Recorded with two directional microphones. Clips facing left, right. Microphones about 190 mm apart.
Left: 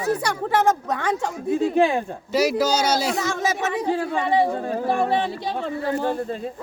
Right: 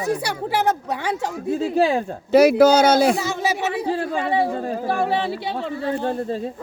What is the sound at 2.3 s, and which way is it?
Speech, 55° right (ahead or behind).